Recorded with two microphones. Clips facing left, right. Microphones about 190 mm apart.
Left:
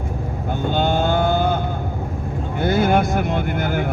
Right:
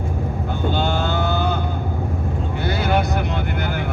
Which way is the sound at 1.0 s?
50° left (ahead or behind).